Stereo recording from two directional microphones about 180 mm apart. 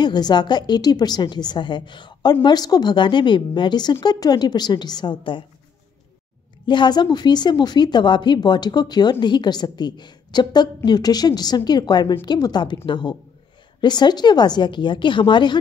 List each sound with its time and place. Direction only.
0.0 s speech: 25° left (ahead or behind)
6.6 s speech: 25° left (ahead or behind)